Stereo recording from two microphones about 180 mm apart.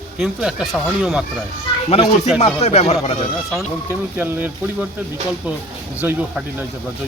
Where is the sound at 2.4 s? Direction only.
35° left (ahead or behind).